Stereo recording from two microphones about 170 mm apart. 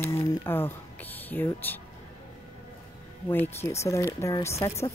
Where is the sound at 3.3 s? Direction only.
15° left (ahead or behind).